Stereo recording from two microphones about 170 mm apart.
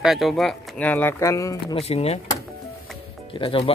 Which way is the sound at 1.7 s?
35° left (ahead or behind).